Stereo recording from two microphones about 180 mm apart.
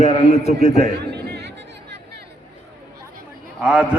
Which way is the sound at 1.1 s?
65° right (ahead or behind).